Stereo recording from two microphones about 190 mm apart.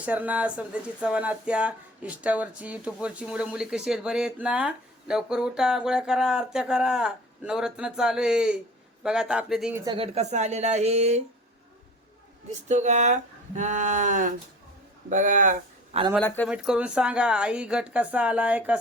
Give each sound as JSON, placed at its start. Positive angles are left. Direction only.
{"t": 0.0, "sound": "speech", "side_deg": -10}
{"t": 9.8, "sound": "speech", "side_deg": -25}
{"t": 12.5, "sound": "speech", "side_deg": -40}
{"t": 16.1, "sound": "speech", "side_deg": 10}
{"t": 16.5, "sound": "speech", "side_deg": -5}